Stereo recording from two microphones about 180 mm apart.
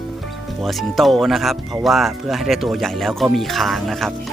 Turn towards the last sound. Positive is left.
turn(degrees=0)  # may be behind; listen again after turning